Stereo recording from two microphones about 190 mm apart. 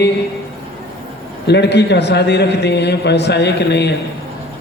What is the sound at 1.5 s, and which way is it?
A man's voice, 65° left (ahead or behind).